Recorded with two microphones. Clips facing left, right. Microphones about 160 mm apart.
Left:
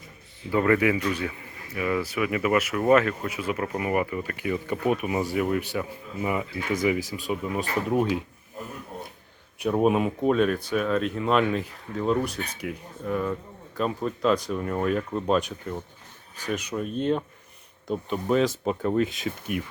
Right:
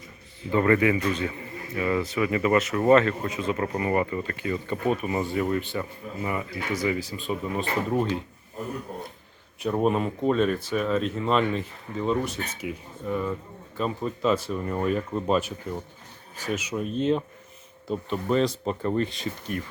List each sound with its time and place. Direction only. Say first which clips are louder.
0.5 s speech: right 1 dB; 5° left (ahead or behind)
6.2 s speech: left 3 dB; 15° left (ahead or behind)
9.6 s speech: left 2 dB; 5° left (ahead or behind)
17.9 s speech: left 1 dB; 5° left (ahead or behind)